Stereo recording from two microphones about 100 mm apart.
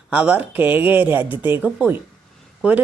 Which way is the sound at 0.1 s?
10° right (ahead or behind).